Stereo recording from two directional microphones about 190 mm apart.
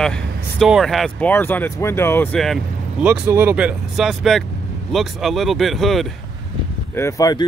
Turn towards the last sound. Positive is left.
turn(degrees=15)  # may be behind; listen again after turning